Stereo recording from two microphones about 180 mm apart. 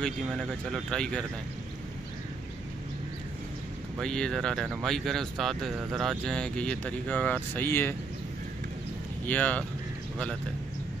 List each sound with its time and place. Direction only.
0.0 s speech: centre (ahead or behind)
4.0 s speech: 5° left (ahead or behind)
9.2 s speech: 10° left (ahead or behind)